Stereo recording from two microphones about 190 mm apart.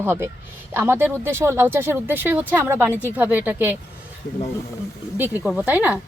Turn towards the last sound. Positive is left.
turn(degrees=-10)  # may be behind; listen again after turning